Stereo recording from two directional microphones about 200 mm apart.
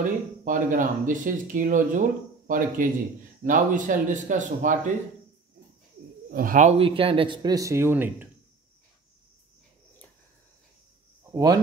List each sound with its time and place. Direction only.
0.0 s speech: 40° right (ahead or behind)
6.3 s speech: 40° right (ahead or behind)
6.8 s speech: 25° right (ahead or behind); by 8.3 s 10° right (ahead or behind)
11.3 s speech: 20° right (ahead or behind)